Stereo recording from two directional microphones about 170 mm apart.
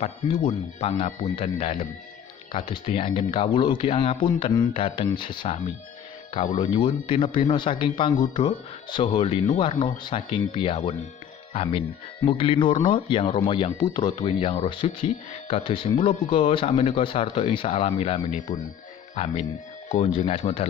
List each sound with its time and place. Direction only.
0.7 s speech: 40° left (ahead or behind)
6.3 s speech: 45° left (ahead or behind)
6.7 s speech: 30° left (ahead or behind)